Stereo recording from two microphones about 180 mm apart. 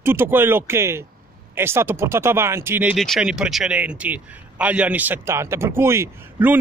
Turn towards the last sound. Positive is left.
turn(degrees=-10)  # may be behind; listen again after turning